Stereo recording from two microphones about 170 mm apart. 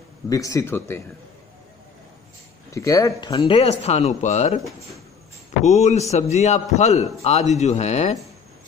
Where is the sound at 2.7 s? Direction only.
20° left (ahead or behind); by 8.2 s 40° left (ahead or behind).